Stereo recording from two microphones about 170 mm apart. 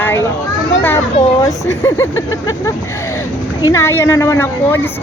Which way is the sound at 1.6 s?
15° left (ahead or behind).